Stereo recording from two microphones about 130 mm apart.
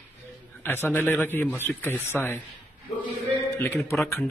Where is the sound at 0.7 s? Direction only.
15° left (ahead or behind).